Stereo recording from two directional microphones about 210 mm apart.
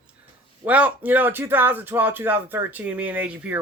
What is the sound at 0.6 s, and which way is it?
Speech, 5° right (ahead or behind).